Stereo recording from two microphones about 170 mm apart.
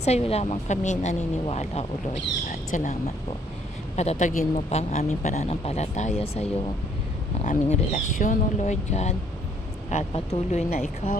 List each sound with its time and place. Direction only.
0.0 s speech: 40° left (ahead or behind)
3.9 s speech: 40° left (ahead or behind)